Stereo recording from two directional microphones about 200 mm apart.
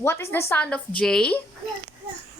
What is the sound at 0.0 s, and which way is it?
A woman's voice, 10° left (ahead or behind).